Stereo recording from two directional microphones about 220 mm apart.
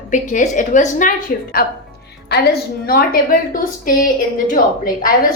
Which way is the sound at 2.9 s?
40° left (ahead or behind).